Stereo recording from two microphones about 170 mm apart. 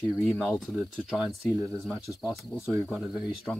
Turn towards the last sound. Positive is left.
turn(degrees=-5)  # may be behind; listen again after turning